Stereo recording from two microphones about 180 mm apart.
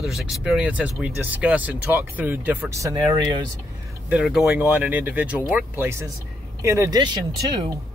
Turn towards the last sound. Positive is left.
turn(degrees=-25)  # may be behind; listen again after turning